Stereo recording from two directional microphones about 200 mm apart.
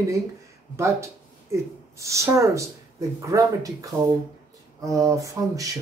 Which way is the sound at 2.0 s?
15° right (ahead or behind).